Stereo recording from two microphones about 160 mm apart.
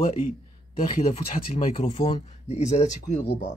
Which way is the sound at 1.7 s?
40° left (ahead or behind).